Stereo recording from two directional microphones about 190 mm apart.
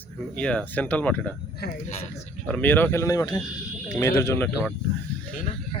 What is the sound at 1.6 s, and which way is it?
Speech, 45° left (ahead or behind).